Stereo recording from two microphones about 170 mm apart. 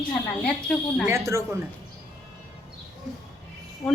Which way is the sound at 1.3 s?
15° right (ahead or behind).